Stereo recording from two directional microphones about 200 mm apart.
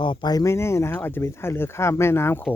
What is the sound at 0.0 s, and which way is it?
Speech, 25° left (ahead or behind).